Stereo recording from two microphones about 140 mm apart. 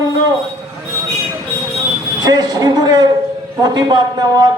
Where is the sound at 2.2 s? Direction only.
25° right (ahead or behind).